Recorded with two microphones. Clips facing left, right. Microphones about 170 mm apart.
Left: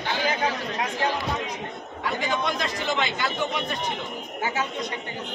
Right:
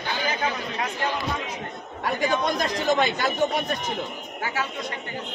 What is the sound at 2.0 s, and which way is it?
Speech, 40° right (ahead or behind).